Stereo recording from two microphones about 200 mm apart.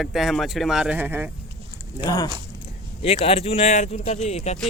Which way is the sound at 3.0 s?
30° left (ahead or behind).